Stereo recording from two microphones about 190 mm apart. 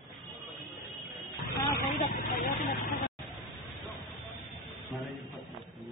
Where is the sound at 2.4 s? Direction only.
45° left (ahead or behind).